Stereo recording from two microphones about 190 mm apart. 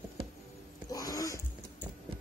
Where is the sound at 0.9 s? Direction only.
20° left (ahead or behind).